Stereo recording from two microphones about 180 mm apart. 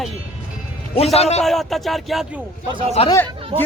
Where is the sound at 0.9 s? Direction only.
35° left (ahead or behind).